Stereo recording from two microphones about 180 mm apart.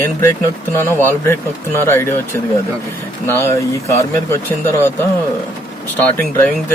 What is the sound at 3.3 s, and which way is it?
Speech, 15° left (ahead or behind).